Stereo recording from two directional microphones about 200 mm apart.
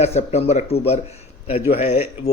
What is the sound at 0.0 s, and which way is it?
A man's voice, 30° left (ahead or behind).